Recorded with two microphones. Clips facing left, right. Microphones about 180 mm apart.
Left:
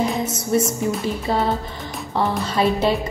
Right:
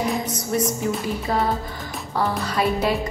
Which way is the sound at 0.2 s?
25° left (ahead or behind).